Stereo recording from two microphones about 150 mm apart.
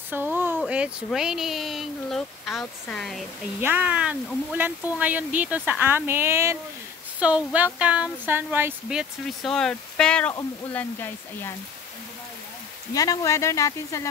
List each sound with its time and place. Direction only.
0.1 s a sound: 15° right (ahead or behind)
0.7 s speech: 5° right (ahead or behind)
3.6 s speech: 10° right (ahead or behind)
8.8 s speech: centre (ahead or behind); by 11.5 s 15° left (ahead or behind)
12.9 s speech: 25° left (ahead or behind)